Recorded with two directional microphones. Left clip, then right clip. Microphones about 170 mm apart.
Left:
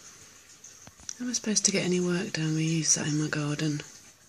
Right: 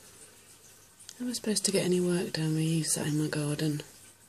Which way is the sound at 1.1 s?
5° right (ahead or behind).